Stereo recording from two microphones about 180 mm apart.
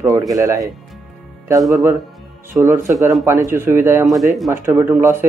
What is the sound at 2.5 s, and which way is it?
Speech, 15° right (ahead or behind).